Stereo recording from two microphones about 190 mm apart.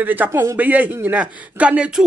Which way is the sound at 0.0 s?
10° right (ahead or behind).